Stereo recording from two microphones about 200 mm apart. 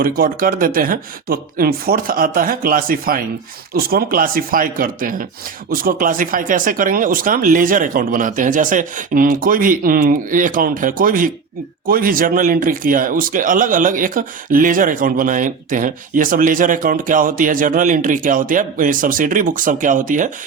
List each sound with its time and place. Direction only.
0.0 s speech: 45° right (ahead or behind)